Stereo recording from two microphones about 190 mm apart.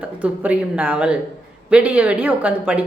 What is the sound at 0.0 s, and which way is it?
A woman's voice, 5° right (ahead or behind).